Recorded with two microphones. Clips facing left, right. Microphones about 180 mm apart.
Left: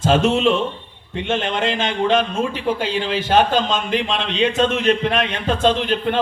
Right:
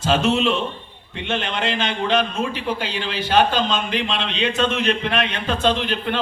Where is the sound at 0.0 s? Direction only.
50° left (ahead or behind).